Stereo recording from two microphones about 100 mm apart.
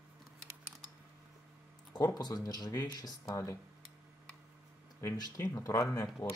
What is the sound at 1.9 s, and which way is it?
Speech, 40° left (ahead or behind).